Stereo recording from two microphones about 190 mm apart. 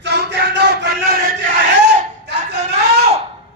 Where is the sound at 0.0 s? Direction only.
65° right (ahead or behind).